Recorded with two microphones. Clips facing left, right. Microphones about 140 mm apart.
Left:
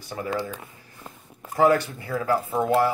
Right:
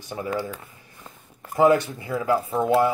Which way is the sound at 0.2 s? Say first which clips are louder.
Even; 20° right (ahead or behind).